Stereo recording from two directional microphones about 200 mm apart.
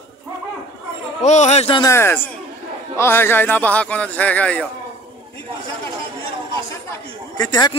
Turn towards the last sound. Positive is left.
turn(degrees=20)  # may be behind; listen again after turning